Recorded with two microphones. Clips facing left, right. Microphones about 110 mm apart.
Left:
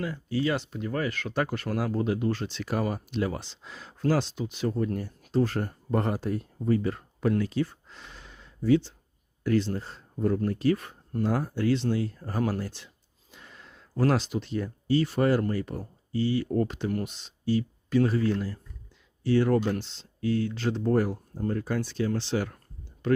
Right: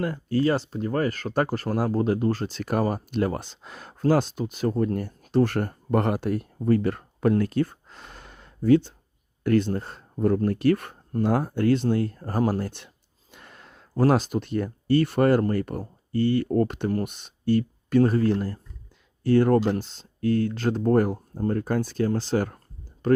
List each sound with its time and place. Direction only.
0.0 s speech: 50° right (ahead or behind)
4.9 s speech: 60° right (ahead or behind)
13.3 s a sound: 55° right (ahead or behind)
14.0 s speech: 45° right (ahead or behind)
19.5 s speech: 35° right (ahead or behind)
19.8 s speech: 45° right (ahead or behind)